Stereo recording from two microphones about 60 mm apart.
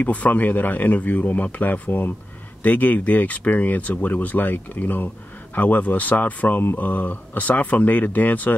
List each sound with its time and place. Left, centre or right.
0.0 s speech: left